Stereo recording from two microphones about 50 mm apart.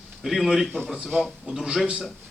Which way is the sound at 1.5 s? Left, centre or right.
Centre.